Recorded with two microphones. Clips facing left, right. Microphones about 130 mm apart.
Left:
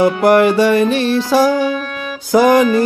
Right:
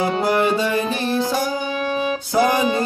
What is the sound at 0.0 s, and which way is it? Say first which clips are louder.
Music: left 8 dB; 75° left (ahead or behind).